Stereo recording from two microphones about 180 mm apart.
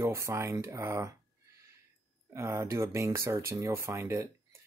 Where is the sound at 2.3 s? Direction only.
15° right (ahead or behind).